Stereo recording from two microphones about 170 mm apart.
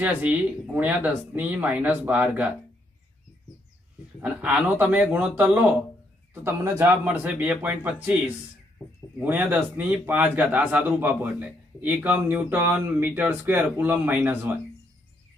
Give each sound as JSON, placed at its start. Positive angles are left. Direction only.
{"t": 0.0, "sound": "a man's voice", "side_deg": -10}
{"t": 4.2, "sound": "a man's voice", "side_deg": -5}
{"t": 9.2, "sound": "a man's voice", "side_deg": -10}